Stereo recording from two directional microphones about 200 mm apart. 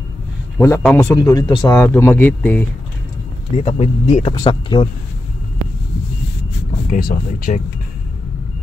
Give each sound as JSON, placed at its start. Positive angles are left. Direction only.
{"t": 0.6, "sound": "a man's voice", "side_deg": 10}
{"t": 3.5, "sound": "speech", "side_deg": 30}
{"t": 6.9, "sound": "speech", "side_deg": 45}